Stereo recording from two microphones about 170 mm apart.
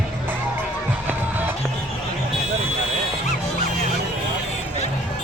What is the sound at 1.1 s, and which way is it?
Music, 10° right (ahead or behind).